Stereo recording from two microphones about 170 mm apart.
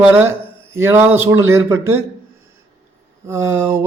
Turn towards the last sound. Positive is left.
turn(degrees=-15)  # may be behind; listen again after turning